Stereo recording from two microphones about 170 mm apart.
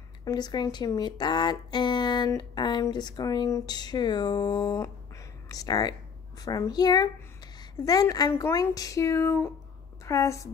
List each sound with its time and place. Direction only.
0.2 s a woman's voice: 25° left (ahead or behind)